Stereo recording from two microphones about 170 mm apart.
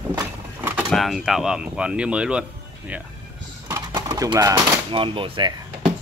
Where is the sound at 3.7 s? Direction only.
20° right (ahead or behind).